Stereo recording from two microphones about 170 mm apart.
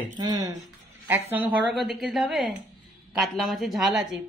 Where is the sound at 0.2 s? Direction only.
25° right (ahead or behind).